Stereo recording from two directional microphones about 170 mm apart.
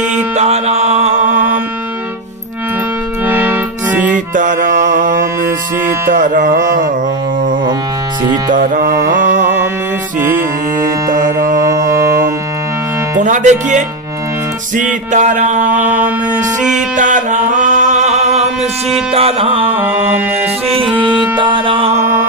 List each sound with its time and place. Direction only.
0.4 s mantra: 40° right (ahead or behind)
3.3 s music: 10° right (ahead or behind)
4.3 s mantra: 50° right (ahead or behind)
6.0 s carnatic music: 50° right (ahead or behind)
8.5 s mantra: 55° right (ahead or behind)
13.2 s mantra: 45° right (ahead or behind)
15.8 s a sound: 10° right (ahead or behind)
16.9 s music: 50° right (ahead or behind)
18.6 s music: centre (ahead or behind)
19.1 s music: 35° right (ahead or behind)